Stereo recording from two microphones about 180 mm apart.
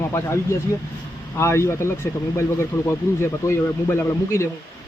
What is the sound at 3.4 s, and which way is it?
Speech, 15° left (ahead or behind).